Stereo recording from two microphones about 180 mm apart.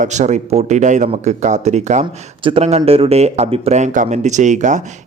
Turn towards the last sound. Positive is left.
turn(degrees=-40)  # may be behind; listen again after turning